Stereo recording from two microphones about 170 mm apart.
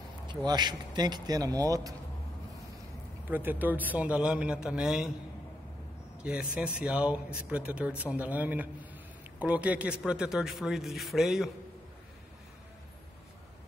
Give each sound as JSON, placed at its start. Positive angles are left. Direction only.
{"t": 0.5, "sound": "a man's voice", "side_deg": -25}
{"t": 3.3, "sound": "a man's voice", "side_deg": -10}
{"t": 6.2, "sound": "a man's voice", "side_deg": -5}